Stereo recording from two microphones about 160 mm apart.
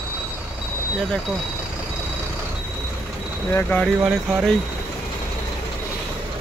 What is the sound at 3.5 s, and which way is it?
Speech, 10° left (ahead or behind).